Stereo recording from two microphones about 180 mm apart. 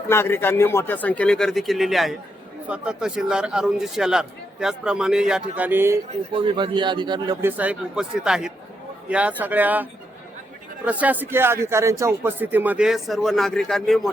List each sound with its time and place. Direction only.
0.1 s a man's voice: 15° left (ahead or behind); by 6.0 s 10° right (ahead or behind)
6.3 s a man's voice: 25° right (ahead or behind)
7.4 s a man's voice: 10° right (ahead or behind)